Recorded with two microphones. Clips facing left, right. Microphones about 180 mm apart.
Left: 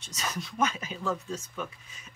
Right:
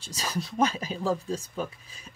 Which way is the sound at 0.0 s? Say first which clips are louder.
Right 3 dB; 30° right (ahead or behind).